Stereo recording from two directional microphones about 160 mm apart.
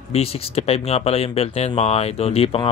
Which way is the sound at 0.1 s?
40° left (ahead or behind).